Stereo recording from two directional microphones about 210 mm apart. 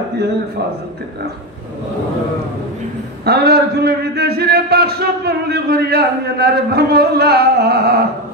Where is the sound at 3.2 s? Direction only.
50° right (ahead or behind).